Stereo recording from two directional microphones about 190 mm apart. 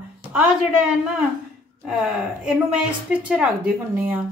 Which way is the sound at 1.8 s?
5° right (ahead or behind).